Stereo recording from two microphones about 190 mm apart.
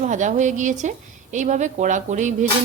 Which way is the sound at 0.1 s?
40° right (ahead or behind).